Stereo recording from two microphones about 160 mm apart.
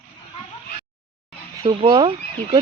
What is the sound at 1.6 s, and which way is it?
Speech, 25° right (ahead or behind).